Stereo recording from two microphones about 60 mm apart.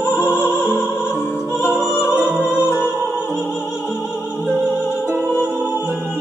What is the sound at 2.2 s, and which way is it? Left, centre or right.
Music, right.